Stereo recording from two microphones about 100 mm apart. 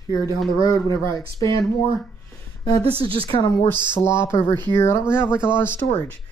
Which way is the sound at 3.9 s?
25° left (ahead or behind).